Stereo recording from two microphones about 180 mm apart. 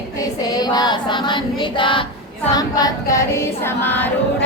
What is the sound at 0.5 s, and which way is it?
Choir, 20° left (ahead or behind).